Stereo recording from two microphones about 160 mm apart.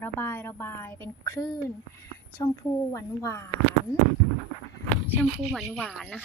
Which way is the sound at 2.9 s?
15° left (ahead or behind).